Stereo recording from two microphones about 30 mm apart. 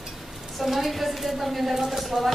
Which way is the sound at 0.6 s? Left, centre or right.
Centre.